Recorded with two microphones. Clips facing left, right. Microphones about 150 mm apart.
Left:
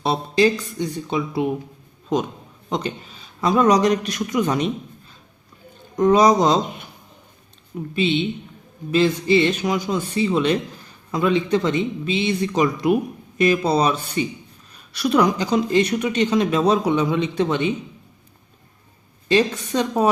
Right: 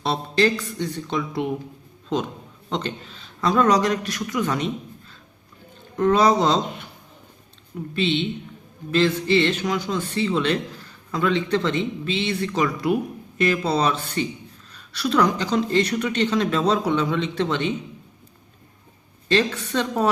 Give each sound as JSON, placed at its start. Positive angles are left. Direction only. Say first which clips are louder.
{"t": 0.0, "sound": "speech", "louder": "left 3 dB", "side_deg": 10}
{"t": 2.6, "sound": "speech", "louder": "left 2 dB", "side_deg": 10}
{"t": 7.9, "sound": "speech", "louder": "left 2 dB", "side_deg": 10}
{"t": 19.3, "sound": "speech", "louder": "left 3 dB", "side_deg": 15}